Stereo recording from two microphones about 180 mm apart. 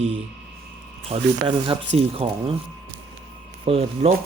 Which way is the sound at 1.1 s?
30° right (ahead or behind).